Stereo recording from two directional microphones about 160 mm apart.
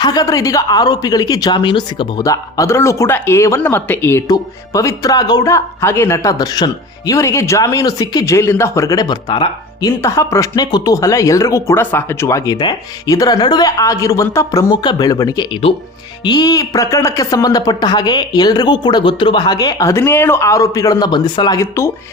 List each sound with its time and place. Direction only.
0.0 s speech: 25° left (ahead or behind)